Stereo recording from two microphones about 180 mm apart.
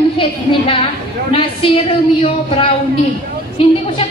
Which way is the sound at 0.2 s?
30° left (ahead or behind).